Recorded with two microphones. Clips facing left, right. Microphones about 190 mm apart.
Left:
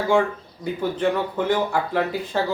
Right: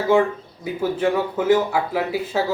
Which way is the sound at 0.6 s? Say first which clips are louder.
Right 1 dB; 5° right (ahead or behind).